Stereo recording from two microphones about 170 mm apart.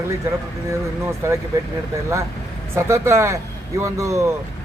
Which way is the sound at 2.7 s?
15° right (ahead or behind).